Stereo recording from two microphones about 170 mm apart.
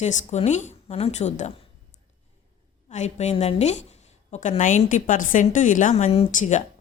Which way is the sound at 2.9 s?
45° left (ahead or behind).